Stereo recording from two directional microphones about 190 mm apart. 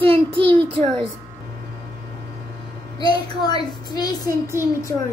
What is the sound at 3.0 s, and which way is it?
Speech, 20° left (ahead or behind).